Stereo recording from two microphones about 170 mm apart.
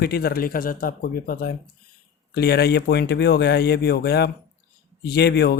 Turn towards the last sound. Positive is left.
turn(degrees=75)  # may be behind; listen again after turning